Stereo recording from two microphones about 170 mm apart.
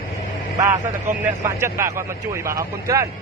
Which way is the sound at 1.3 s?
15° right (ahead or behind).